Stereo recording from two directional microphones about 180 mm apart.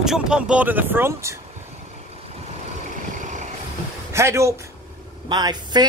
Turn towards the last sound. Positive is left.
turn(degrees=-25)  # may be behind; listen again after turning